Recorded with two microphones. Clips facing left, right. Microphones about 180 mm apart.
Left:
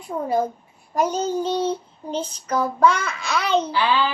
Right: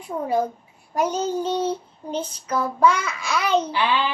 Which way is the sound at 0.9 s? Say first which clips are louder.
Left 1 dB; 10° right (ahead or behind).